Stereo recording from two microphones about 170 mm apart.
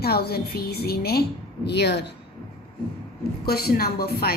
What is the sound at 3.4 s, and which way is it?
Speech, 65° left (ahead or behind).